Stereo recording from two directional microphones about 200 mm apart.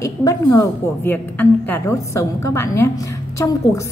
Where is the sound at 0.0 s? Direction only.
15° left (ahead or behind).